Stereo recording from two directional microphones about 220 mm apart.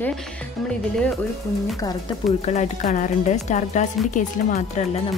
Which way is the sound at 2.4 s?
30° left (ahead or behind).